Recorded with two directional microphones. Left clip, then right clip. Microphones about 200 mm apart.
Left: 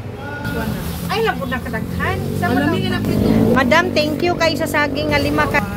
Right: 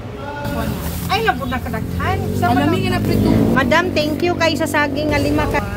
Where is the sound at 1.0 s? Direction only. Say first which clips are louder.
Right 1 dB; centre (ahead or behind).